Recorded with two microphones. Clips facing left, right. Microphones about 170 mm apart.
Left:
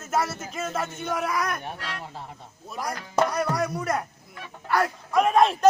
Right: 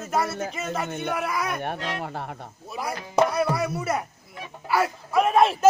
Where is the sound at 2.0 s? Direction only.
65° right (ahead or behind).